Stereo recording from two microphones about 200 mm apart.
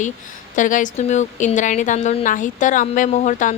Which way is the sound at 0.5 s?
40° left (ahead or behind).